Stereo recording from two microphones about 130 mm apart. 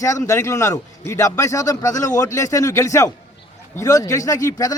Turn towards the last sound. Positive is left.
turn(degrees=25)  # may be behind; listen again after turning